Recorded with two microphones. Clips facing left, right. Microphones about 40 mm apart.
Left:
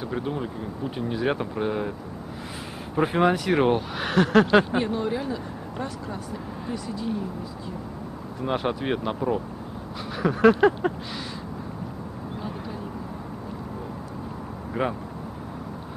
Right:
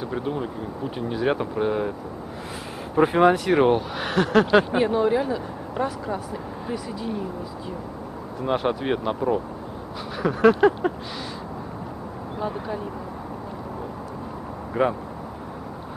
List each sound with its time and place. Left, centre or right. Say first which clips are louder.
0.0 s speech: right 2 dB; centre
3.0 s speech: right 4 dB; centre
8.4 s speech: right 3 dB; centre
14.7 s speech: right 5 dB; centre